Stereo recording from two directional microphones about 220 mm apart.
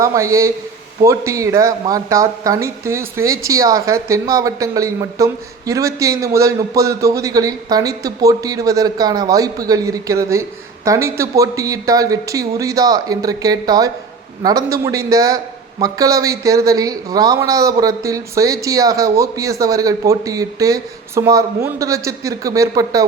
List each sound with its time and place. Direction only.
0.0 s speech: 15° right (ahead or behind)